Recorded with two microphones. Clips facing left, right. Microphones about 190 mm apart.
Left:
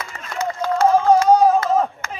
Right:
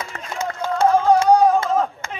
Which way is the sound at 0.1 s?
55° right (ahead or behind).